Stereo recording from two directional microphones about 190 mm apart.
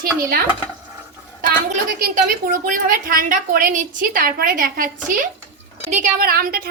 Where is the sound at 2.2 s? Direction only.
45° right (ahead or behind).